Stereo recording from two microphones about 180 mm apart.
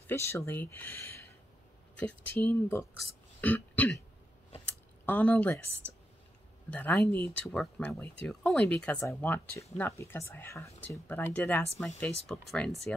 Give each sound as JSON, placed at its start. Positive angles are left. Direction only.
{"t": 0.0, "sound": "speech", "side_deg": 15}
{"t": 5.0, "sound": "speech", "side_deg": 10}
{"t": 6.7, "sound": "speech", "side_deg": 10}
{"t": 7.4, "sound": "speech", "side_deg": 5}